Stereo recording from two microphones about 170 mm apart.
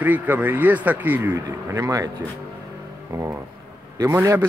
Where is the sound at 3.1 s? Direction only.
15° right (ahead or behind).